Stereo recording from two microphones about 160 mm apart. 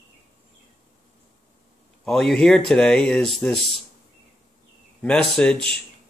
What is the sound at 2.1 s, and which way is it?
Speech, 5° left (ahead or behind).